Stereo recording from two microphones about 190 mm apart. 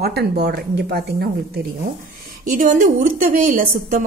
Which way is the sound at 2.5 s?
40° right (ahead or behind).